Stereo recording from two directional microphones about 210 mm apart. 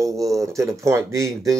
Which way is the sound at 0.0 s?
15° right (ahead or behind).